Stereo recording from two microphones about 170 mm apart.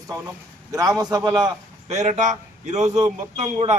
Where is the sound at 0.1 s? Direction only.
20° right (ahead or behind).